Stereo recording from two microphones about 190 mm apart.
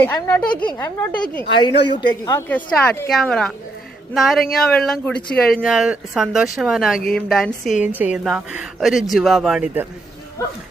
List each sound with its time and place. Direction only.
0.0 s a woman's voice: 10° left (ahead or behind)
1.6 s a woman's voice: 20° left (ahead or behind)
2.5 s a woman's voice: 10° left (ahead or behind)